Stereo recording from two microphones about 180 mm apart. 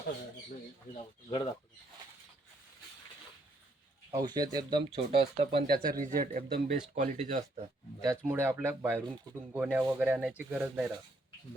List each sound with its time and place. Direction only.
0.9 s speech: 30° left (ahead or behind)
4.1 s speech: 20° right (ahead or behind)
5.6 s speech: 55° right (ahead or behind)
6.0 s speech: 45° right (ahead or behind)
6.9 s speech: 40° right (ahead or behind)
8.0 s speech: 15° right (ahead or behind)